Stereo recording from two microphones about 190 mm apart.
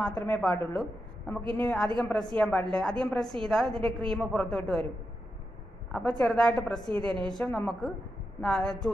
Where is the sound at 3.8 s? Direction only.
25° right (ahead or behind).